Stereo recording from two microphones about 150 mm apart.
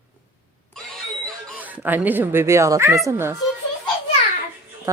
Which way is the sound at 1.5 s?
10° right (ahead or behind).